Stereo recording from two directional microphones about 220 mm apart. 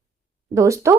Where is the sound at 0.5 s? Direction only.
15° right (ahead or behind).